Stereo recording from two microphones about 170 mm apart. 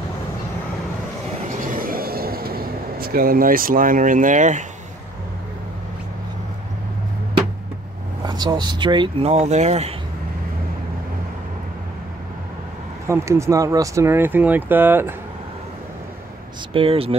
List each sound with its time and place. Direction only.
1.4 s vehicle: 50° right (ahead or behind)
8.3 s speech: 25° right (ahead or behind)
13.0 s speech: 15° right (ahead or behind)
16.7 s speech: 35° right (ahead or behind)